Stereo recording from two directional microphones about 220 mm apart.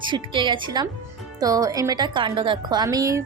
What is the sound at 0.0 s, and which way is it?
A woman's voice, 20° right (ahead or behind).